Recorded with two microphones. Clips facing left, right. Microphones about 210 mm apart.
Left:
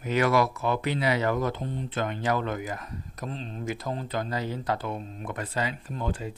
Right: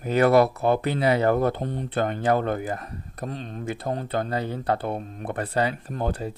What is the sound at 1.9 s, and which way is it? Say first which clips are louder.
Speech: right 5 dB; 40° right (ahead or behind).